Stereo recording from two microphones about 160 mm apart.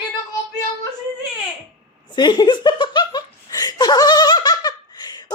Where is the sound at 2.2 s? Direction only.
25° left (ahead or behind).